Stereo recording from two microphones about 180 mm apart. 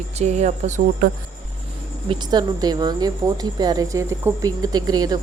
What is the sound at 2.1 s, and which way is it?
A woman's voice, 25° right (ahead or behind).